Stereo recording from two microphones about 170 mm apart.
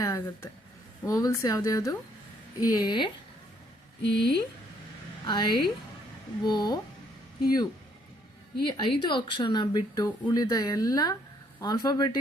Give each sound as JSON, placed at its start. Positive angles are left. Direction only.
{"t": 0.0, "sound": "speech", "side_deg": 15}
{"t": 4.0, "sound": "speech", "side_deg": 80}
{"t": 5.2, "sound": "speech", "side_deg": 25}